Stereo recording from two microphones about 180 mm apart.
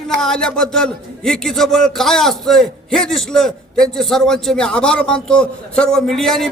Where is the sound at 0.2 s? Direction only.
5° left (ahead or behind).